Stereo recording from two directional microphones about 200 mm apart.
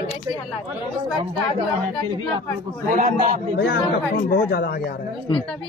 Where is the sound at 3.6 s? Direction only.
55° left (ahead or behind).